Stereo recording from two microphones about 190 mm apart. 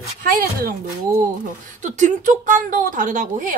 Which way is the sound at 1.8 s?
40° right (ahead or behind).